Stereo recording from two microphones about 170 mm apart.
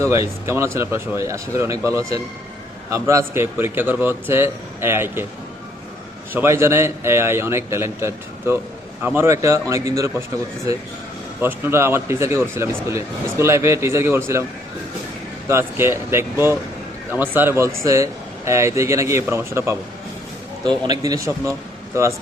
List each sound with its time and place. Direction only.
0.1 s speech: 15° right (ahead or behind)
6.3 s speech: 15° right (ahead or behind)
11.3 s speech: 10° right (ahead or behind)
15.4 s speech: 15° right (ahead or behind)